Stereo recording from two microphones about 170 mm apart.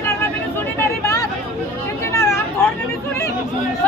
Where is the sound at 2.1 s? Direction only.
15° left (ahead or behind).